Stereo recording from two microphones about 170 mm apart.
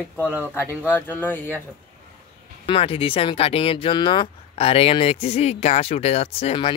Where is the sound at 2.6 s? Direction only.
30° left (ahead or behind).